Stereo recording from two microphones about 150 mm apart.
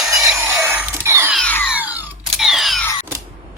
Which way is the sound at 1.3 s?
5° left (ahead or behind).